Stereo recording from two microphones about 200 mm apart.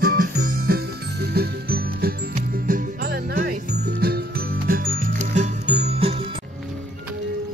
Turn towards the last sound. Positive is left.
turn(degrees=-30)  # may be behind; listen again after turning